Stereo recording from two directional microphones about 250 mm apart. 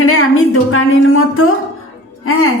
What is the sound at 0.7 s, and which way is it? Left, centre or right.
Speech, left.